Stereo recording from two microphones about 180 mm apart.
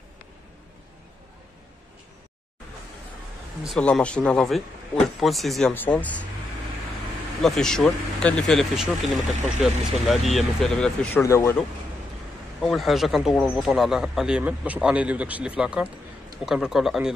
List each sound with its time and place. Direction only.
3.6 s speech: centre (ahead or behind)
7.4 s speech: centre (ahead or behind)
11.2 s speech: 15° left (ahead or behind)
12.5 s speech: centre (ahead or behind)